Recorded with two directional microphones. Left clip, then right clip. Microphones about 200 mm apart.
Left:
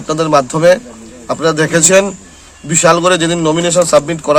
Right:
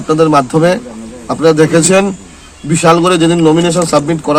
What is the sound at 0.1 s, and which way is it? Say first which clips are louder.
A man's voice: right 3 dB; 15° left (ahead or behind).